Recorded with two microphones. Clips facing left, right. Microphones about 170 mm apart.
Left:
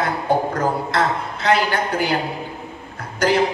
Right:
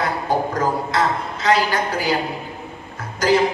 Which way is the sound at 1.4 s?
60° left (ahead or behind).